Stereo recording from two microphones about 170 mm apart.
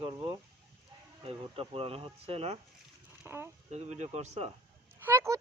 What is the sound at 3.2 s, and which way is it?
Speech, 15° right (ahead or behind).